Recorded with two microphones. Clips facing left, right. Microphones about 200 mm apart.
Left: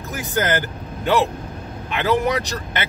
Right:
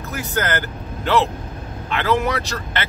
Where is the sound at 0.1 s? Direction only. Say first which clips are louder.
Left 2 dB; 15° left (ahead or behind).